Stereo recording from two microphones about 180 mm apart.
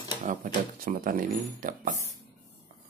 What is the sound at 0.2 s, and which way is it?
Speech, 50° right (ahead or behind).